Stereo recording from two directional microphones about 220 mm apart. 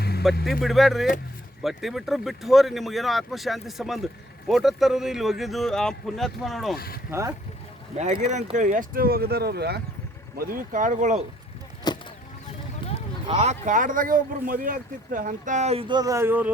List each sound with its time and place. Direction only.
0.0 s a sound: 45° left (ahead or behind)
0.6 s speech: centre (ahead or behind)
6.7 s speech: 45° left (ahead or behind)
7.1 s speech: 15° right (ahead or behind)
7.9 s speech: 30° right (ahead or behind)
11.9 s a sound: 20° left (ahead or behind)
13.2 s speech: 25° right (ahead or behind); by 16.5 s 10° right (ahead or behind)